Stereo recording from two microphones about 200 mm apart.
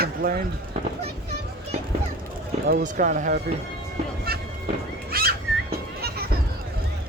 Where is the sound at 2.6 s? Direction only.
45° right (ahead or behind).